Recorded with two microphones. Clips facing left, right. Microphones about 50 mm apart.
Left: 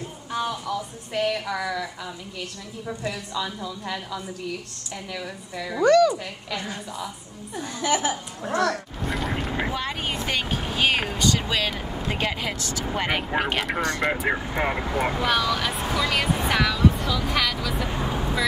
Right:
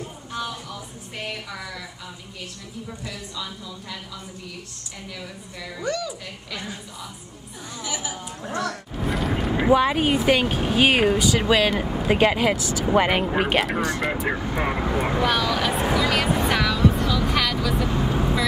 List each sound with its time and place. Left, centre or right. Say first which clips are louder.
5.8 s speech: left 11 dB; left
7.8 s a woman's voice: left 8 dB; left
9.0 s vehicle: right 4 dB; centre
9.7 s speech: right 10 dB; centre
18.1 s vehicle: right 3 dB; centre